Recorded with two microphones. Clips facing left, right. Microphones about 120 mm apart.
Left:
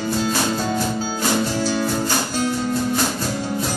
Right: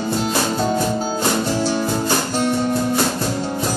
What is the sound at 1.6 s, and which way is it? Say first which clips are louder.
Music: right 1 dB; 25° right (ahead or behind).